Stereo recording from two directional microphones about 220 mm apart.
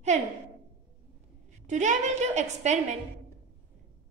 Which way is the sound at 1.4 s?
35° right (ahead or behind).